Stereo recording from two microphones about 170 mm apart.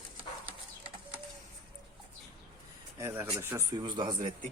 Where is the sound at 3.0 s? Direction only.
15° right (ahead or behind).